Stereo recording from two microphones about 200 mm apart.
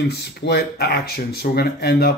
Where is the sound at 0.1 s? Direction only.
55° left (ahead or behind).